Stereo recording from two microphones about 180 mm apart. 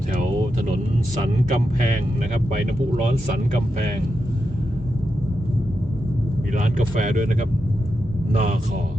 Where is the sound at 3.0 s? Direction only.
45° right (ahead or behind).